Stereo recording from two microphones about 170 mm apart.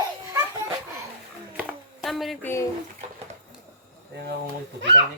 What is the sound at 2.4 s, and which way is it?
Speech, 15° left (ahead or behind).